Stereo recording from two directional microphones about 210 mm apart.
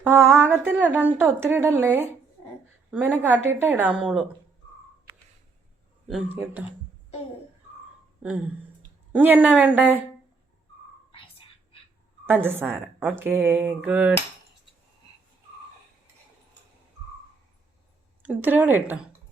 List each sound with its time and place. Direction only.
0.0 s speech: 10° right (ahead or behind)
6.1 s speech: 5° right (ahead or behind)
9.1 s speech: 10° right (ahead or behind)
12.2 s speech: 10° right (ahead or behind)
18.2 s speech: 10° right (ahead or behind)